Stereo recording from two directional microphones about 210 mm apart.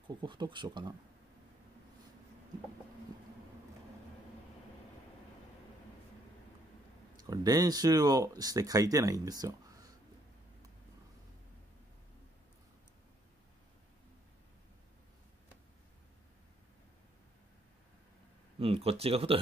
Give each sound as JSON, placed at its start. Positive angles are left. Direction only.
{"t": 0.2, "sound": "speech", "side_deg": -20}
{"t": 7.2, "sound": "speech", "side_deg": -15}
{"t": 18.6, "sound": "speech", "side_deg": -30}